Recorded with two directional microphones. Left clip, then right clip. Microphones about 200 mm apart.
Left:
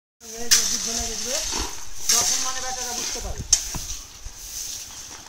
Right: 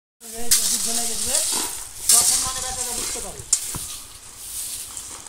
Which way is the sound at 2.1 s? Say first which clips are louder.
Right 1 dB; 20° left (ahead or behind).